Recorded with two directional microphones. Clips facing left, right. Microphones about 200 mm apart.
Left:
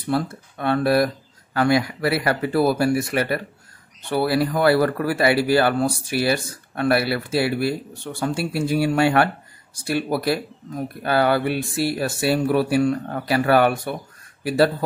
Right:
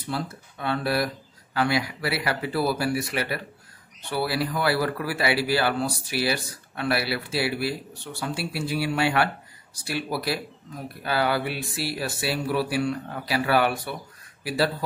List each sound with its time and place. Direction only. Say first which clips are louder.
0.1 s speech: left 8 dB; 55° left (ahead or behind)